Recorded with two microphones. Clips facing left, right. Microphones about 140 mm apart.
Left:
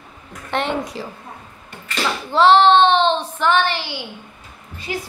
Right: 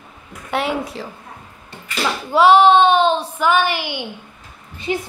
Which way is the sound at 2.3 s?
10° right (ahead or behind).